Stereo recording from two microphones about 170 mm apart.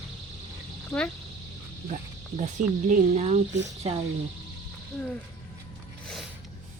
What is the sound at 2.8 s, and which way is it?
Speech, 45° right (ahead or behind).